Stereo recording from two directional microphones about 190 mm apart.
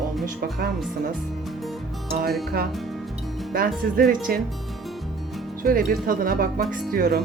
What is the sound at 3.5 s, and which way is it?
Speech, 50° right (ahead or behind).